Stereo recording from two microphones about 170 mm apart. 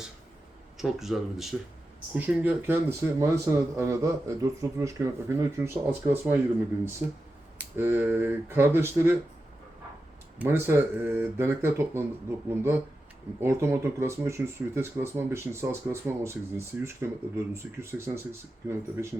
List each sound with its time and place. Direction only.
0.8 s speech: centre (ahead or behind)
7.6 s speech: 10° right (ahead or behind)
10.3 s speech: 10° right (ahead or behind)
13.4 s speech: 15° right (ahead or behind)